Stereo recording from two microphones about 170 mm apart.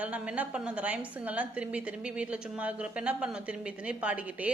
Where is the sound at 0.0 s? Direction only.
10° right (ahead or behind).